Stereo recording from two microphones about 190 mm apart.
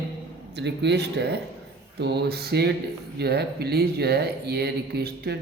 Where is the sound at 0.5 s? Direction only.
65° right (ahead or behind).